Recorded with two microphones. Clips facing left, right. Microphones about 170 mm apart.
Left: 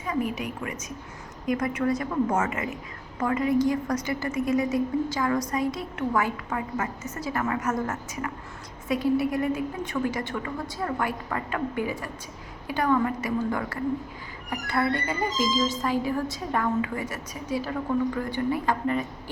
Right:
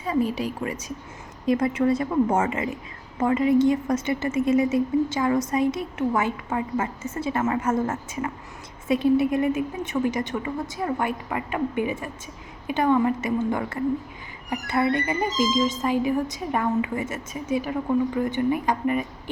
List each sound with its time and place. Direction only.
0.0 s a woman's voice: 30° right (ahead or behind)